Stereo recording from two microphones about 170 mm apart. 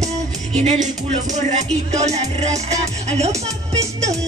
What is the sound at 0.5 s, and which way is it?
Music, 45° right (ahead or behind).